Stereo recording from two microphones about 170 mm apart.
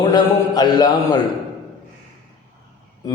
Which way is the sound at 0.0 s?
25° left (ahead or behind).